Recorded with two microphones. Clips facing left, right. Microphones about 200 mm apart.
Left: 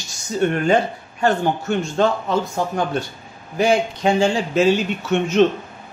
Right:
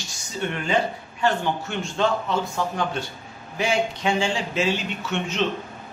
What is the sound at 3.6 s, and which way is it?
Speech, 40° left (ahead or behind).